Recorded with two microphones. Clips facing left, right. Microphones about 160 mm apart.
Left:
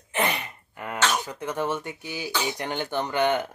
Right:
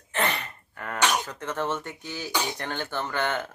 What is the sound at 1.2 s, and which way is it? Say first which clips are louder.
Speech: left 2 dB; 10° left (ahead or behind).